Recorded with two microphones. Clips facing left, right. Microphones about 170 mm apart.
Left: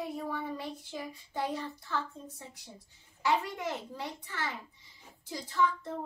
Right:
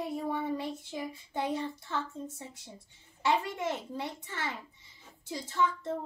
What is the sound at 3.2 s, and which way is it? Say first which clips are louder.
A child's voice: right 1 dB; 25° right (ahead or behind).